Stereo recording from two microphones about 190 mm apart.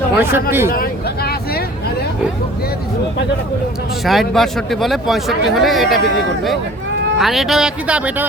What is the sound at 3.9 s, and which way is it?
Speech, centre (ahead or behind).